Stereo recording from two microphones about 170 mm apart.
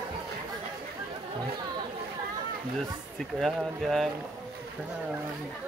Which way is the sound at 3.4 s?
Centre (ahead or behind).